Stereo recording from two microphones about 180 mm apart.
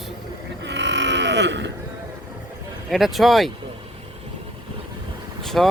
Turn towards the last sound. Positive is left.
turn(degrees=0)  # may be behind; listen again after turning